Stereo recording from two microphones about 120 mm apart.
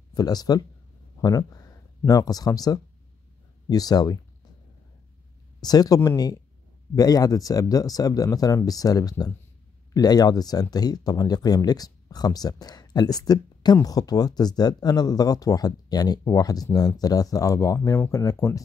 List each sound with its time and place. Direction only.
0.1 s speech: 35° left (ahead or behind)
5.6 s speech: 35° left (ahead or behind)